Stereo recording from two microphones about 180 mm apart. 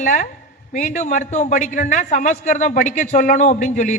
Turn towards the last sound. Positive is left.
turn(degrees=40)  # may be behind; listen again after turning